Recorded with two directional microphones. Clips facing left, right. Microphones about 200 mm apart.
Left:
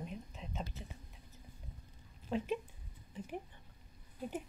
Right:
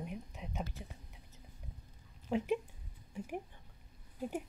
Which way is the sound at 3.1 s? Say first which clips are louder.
Right 2 dB; 10° right (ahead or behind).